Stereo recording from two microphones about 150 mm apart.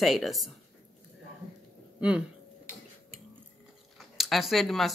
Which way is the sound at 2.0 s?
5° right (ahead or behind).